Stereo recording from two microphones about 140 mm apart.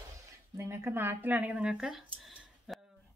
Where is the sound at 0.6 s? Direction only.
20° right (ahead or behind); by 2.8 s centre (ahead or behind).